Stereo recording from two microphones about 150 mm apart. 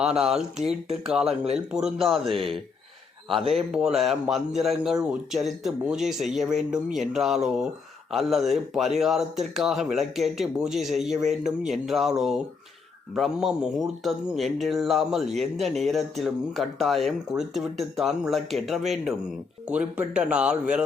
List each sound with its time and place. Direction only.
0.0 s speech: 5° right (ahead or behind)
3.3 s speech: 40° right (ahead or behind)
3.7 s speech: 5° right (ahead or behind)